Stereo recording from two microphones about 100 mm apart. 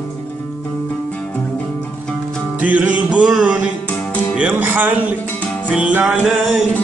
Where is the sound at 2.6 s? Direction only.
15° right (ahead or behind).